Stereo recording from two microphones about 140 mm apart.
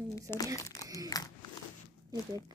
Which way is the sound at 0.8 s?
25° right (ahead or behind).